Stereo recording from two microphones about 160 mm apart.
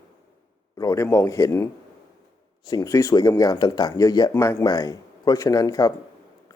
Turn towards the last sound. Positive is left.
turn(degrees=25)  # may be behind; listen again after turning